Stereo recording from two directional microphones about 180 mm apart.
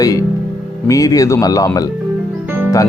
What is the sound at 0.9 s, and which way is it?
Speech, 20° left (ahead or behind).